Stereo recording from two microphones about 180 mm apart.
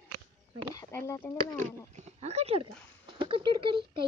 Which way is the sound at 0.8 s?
15° left (ahead or behind).